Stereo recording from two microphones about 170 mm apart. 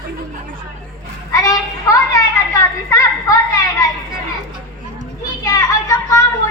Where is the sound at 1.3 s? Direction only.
20° left (ahead or behind).